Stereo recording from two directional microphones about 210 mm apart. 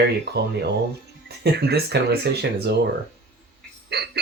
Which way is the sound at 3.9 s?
50° right (ahead or behind).